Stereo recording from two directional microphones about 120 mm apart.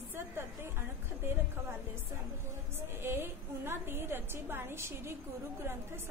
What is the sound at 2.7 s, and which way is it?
A woman's voice, 20° right (ahead or behind).